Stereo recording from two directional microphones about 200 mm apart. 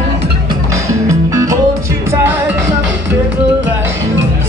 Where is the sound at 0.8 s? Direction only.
15° right (ahead or behind).